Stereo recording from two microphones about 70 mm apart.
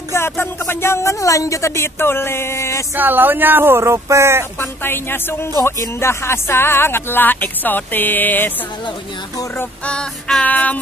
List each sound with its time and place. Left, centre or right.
0.1 s speech: left
3.0 s speech: right
4.6 s speech: left
9.8 s female singing: centre